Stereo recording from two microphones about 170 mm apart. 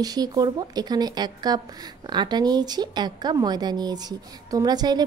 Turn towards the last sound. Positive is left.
turn(degrees=-25)  # may be behind; listen again after turning